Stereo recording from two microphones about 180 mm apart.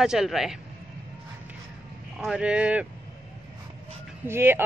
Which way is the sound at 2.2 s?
5° right (ahead or behind).